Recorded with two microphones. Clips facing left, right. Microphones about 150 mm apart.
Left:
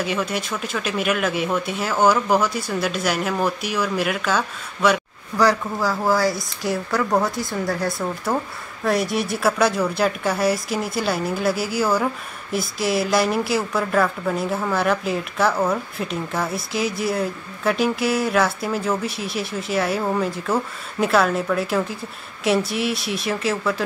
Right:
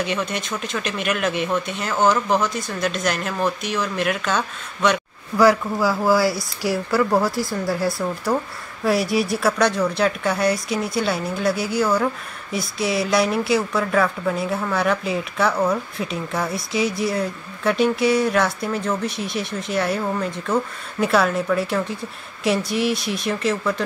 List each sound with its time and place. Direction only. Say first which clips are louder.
0.0 s a woman's voice: left 1 dB; 5° left (ahead or behind)
5.4 s a woman's voice: right 3 dB; 10° right (ahead or behind)